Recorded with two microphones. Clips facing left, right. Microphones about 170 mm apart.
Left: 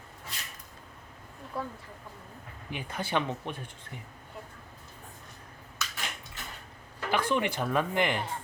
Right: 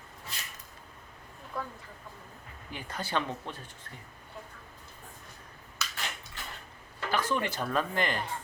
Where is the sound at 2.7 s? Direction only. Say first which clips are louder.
Left 2 dB; 15° left (ahead or behind).